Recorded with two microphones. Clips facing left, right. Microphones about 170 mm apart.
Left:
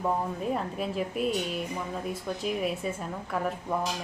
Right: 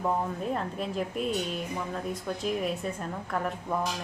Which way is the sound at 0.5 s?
5° left (ahead or behind).